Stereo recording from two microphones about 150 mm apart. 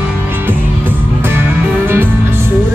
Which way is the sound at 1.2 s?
15° right (ahead or behind).